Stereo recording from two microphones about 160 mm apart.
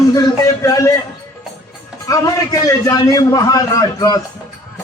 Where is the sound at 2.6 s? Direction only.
20° left (ahead or behind).